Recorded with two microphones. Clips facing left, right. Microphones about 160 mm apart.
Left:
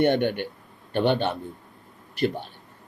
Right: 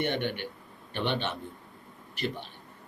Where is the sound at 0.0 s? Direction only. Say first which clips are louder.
Left 9 dB; 50° left (ahead or behind).